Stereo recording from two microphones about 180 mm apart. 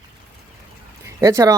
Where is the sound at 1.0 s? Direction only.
15° right (ahead or behind).